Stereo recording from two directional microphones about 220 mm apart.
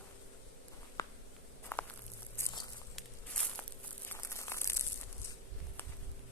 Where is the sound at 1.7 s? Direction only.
10° left (ahead or behind).